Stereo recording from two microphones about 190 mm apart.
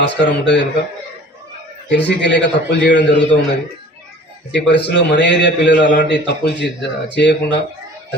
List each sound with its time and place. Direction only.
0.0 s speech: 65° left (ahead or behind)
1.9 s speech: 65° left (ahead or behind)
4.5 s speech: 65° left (ahead or behind)